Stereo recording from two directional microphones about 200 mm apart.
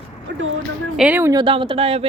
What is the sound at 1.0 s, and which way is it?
Speech, 10° right (ahead or behind).